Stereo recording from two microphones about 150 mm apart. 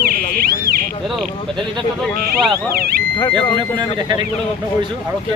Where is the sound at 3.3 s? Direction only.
30° right (ahead or behind).